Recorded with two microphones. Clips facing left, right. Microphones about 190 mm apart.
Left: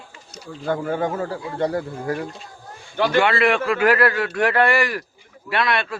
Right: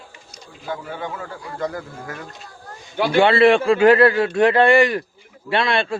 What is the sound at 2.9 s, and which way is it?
Speech, 10° right (ahead or behind).